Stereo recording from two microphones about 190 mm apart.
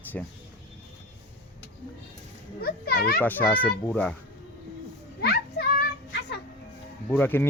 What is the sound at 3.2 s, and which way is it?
Speech, 10° left (ahead or behind).